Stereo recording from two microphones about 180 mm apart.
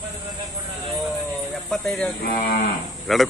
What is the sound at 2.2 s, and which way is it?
Cattle, 60° left (ahead or behind).